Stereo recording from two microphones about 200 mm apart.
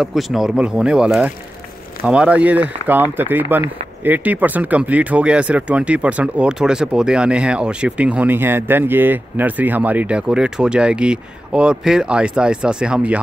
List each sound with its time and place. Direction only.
0.0 s speech: centre (ahead or behind)